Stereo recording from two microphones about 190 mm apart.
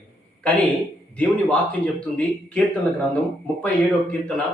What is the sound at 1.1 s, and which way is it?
A man's voice, 10° left (ahead or behind).